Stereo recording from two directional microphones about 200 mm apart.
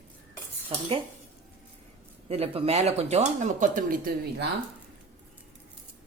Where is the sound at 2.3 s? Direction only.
30° right (ahead or behind).